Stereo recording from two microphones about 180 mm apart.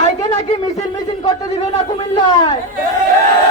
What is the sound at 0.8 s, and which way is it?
A man's voice, 20° left (ahead or behind).